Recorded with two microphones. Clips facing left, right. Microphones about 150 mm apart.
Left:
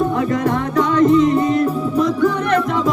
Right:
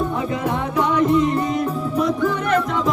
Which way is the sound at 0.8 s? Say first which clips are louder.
Left 4 dB; 10° right (ahead or behind).